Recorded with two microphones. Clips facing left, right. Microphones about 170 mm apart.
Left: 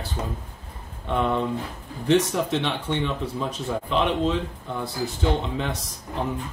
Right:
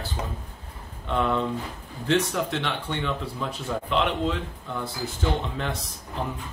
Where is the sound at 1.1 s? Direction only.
15° left (ahead or behind).